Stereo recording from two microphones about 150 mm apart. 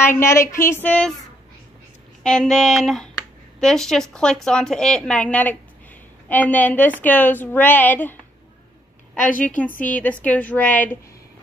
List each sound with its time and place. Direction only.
0.0 s a woman's voice: 15° left (ahead or behind)
2.2 s a woman's voice: 5° left (ahead or behind)